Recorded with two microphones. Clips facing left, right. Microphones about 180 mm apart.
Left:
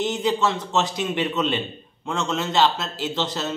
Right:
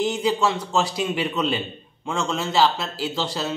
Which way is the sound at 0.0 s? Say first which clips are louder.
Right 1 dB; 10° right (ahead or behind).